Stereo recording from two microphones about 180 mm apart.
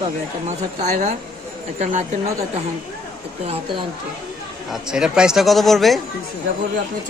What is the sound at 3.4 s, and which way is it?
Speech, 35° right (ahead or behind).